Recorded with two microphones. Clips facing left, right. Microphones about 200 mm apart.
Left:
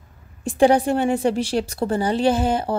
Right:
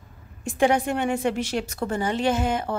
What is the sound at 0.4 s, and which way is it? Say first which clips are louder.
A woman's voice: left 5 dB; 35° left (ahead or behind).